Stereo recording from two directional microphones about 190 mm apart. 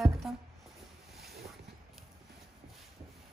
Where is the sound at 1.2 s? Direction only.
Centre (ahead or behind).